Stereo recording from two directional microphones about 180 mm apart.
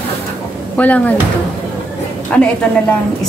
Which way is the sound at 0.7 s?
10° left (ahead or behind).